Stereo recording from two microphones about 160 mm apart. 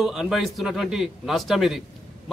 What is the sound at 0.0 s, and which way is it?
Speech, 5° right (ahead or behind).